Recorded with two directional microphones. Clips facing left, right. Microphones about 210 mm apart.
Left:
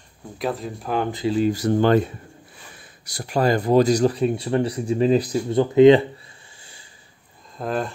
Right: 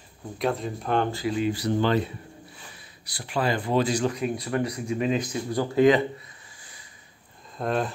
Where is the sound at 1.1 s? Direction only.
25° left (ahead or behind).